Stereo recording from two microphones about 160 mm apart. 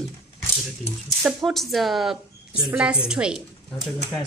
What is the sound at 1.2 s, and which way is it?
Speech, centre (ahead or behind).